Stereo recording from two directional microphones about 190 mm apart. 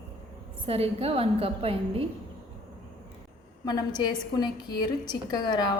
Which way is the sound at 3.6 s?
20° left (ahead or behind).